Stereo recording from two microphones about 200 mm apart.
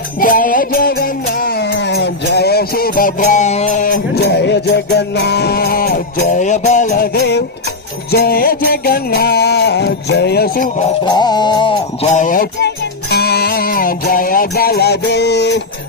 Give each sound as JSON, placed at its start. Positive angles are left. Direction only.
{"t": 0.2, "sound": "music", "side_deg": 45}
{"t": 11.0, "sound": "music", "side_deg": 20}
{"t": 12.1, "sound": "music", "side_deg": 40}